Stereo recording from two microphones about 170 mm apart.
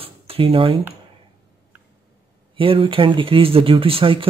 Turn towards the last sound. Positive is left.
turn(degrees=-30)  # may be behind; listen again after turning